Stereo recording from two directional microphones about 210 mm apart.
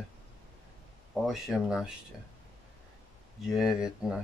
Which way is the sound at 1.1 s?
Centre (ahead or behind).